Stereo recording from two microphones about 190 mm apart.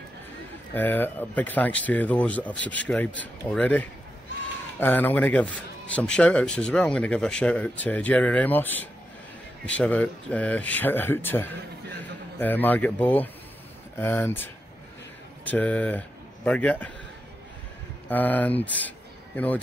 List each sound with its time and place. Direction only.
0.7 s a man's voice: 10° left (ahead or behind)
18.0 s speech: 10° left (ahead or behind)